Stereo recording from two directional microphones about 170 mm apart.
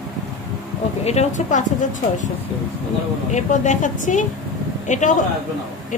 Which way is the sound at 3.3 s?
45° left (ahead or behind).